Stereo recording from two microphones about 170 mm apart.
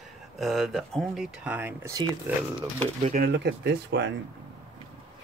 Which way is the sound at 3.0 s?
50° right (ahead or behind).